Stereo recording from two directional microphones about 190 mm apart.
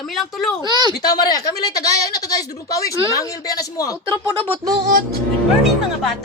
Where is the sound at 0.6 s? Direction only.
20° right (ahead or behind).